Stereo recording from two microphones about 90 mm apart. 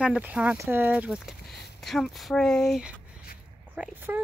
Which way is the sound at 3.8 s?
5° right (ahead or behind).